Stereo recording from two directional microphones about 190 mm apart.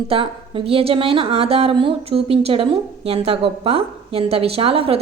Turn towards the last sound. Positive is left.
turn(degrees=-30)  # may be behind; listen again after turning